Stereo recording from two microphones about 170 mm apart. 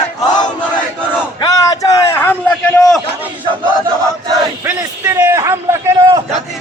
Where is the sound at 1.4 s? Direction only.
20° left (ahead or behind).